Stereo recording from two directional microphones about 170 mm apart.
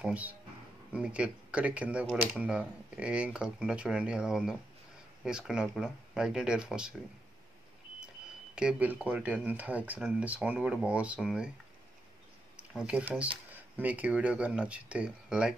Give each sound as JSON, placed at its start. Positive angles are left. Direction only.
{"t": 0.0, "sound": "speech", "side_deg": -10}
{"t": 8.5, "sound": "speech", "side_deg": -5}
{"t": 12.7, "sound": "speech", "side_deg": -5}